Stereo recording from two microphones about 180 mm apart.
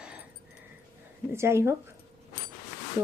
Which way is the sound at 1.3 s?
15° right (ahead or behind).